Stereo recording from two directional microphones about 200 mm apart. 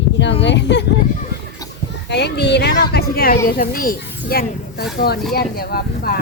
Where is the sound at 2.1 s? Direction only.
55° left (ahead or behind).